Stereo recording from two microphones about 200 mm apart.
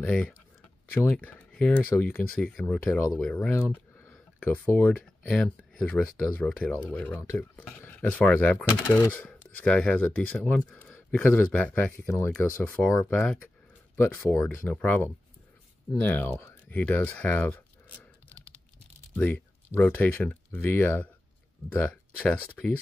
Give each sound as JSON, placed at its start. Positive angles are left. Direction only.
{"t": 0.0, "sound": "speech", "side_deg": 5}
{"t": 19.1, "sound": "speech", "side_deg": 10}